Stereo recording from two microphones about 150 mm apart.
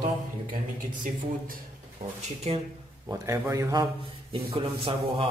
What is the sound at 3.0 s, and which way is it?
Speech, 20° right (ahead or behind).